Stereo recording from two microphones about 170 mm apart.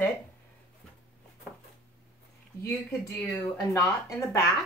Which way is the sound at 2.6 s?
15° left (ahead or behind).